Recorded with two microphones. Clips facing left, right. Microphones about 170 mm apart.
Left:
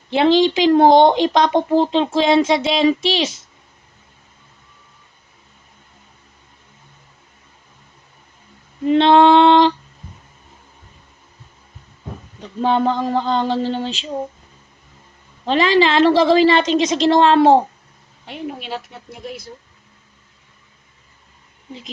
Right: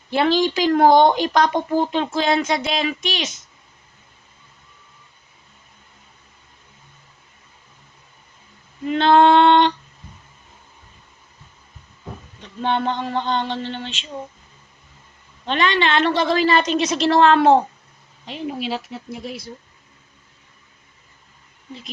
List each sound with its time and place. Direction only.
0.1 s speech: 20° left (ahead or behind)
8.9 s speech: 25° left (ahead or behind)
12.4 s a sound: 35° left (ahead or behind)
15.4 s a sound: 30° left (ahead or behind)
17.1 s speech: 30° left (ahead or behind)
18.7 s speech: centre (ahead or behind)